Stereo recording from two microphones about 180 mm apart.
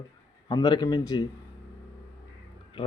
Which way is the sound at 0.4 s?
25° left (ahead or behind).